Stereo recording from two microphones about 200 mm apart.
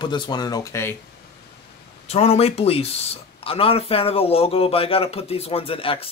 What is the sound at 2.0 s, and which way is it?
Speech, 30° left (ahead or behind).